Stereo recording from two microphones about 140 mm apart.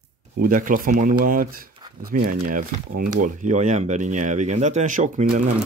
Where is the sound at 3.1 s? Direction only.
65° right (ahead or behind).